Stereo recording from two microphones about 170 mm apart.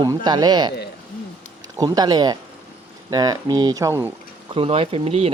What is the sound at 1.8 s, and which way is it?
Speech, 25° right (ahead or behind).